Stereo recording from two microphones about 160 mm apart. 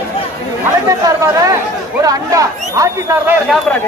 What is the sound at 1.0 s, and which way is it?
Speech, 20° right (ahead or behind).